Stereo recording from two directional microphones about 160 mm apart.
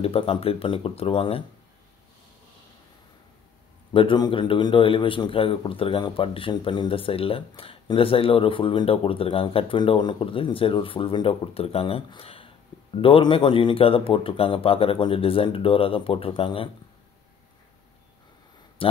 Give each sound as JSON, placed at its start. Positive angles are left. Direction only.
{"t": 0.0, "sound": "a man's voice", "side_deg": 35}
{"t": 3.9, "sound": "a man's voice", "side_deg": 30}
{"t": 18.8, "sound": "speech", "side_deg": 35}